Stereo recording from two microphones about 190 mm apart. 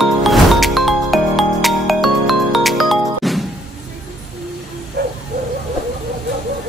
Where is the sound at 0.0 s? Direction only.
Centre (ahead or behind).